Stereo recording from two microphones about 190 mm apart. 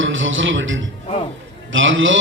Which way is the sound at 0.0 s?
90° right.